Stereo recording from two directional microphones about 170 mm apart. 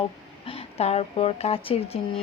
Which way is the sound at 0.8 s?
35° left (ahead or behind).